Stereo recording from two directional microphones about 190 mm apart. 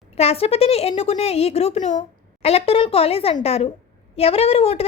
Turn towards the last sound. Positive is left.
turn(degrees=30)  # may be behind; listen again after turning